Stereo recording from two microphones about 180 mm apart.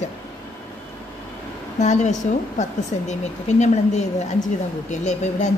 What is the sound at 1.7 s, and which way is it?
Speech, 40° left (ahead or behind).